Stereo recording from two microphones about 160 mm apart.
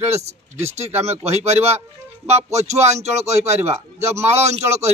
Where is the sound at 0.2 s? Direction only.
45° right (ahead or behind).